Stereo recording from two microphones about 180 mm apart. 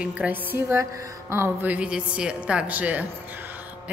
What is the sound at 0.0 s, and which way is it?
A woman's voice, 5° right (ahead or behind).